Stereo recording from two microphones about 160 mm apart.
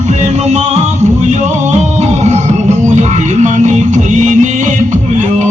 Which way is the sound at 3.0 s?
50° right (ahead or behind).